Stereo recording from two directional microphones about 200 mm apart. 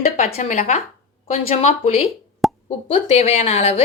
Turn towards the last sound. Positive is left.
turn(degrees=30)  # may be behind; listen again after turning